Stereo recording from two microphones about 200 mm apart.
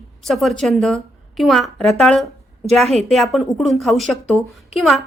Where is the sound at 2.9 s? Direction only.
30° right (ahead or behind).